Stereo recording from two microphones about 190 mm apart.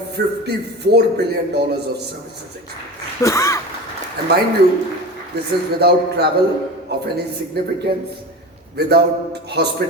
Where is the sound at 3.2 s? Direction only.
15° left (ahead or behind).